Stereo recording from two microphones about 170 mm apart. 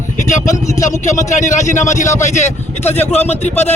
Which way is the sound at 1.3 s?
45° left (ahead or behind).